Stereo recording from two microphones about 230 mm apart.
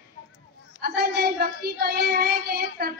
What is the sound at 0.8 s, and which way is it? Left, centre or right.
Child singing, right.